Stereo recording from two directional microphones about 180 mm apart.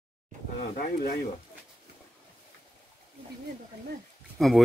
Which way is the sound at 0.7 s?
55° left (ahead or behind).